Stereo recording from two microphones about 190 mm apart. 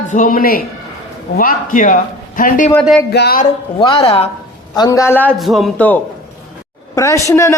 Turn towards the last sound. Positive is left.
turn(degrees=15)  # may be behind; listen again after turning